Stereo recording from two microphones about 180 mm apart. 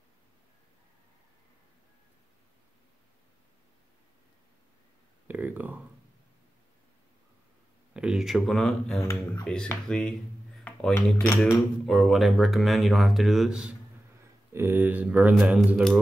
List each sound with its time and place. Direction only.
5.3 s a sound: 10° right (ahead or behind)
7.9 s speech: 5° right (ahead or behind)
9.0 s speech: 15° left (ahead or behind)
9.4 s speech: 5° left (ahead or behind)
14.5 s speech: 15° right (ahead or behind)